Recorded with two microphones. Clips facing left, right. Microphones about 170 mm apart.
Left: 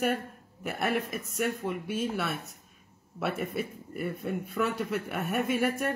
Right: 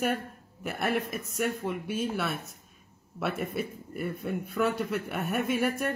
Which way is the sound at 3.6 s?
40° right (ahead or behind).